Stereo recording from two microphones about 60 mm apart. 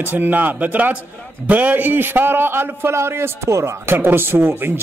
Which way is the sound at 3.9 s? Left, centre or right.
Right.